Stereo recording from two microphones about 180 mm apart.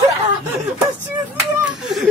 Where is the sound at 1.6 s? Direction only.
Centre (ahead or behind).